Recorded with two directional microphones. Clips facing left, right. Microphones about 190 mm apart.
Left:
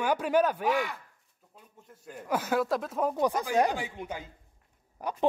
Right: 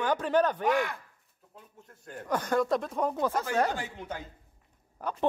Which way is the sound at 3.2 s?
15° left (ahead or behind).